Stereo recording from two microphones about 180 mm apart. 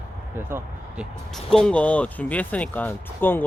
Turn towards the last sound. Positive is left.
turn(degrees=10)  # may be behind; listen again after turning